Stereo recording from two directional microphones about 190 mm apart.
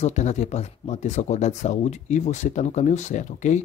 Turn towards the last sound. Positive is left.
turn(degrees=40)  # may be behind; listen again after turning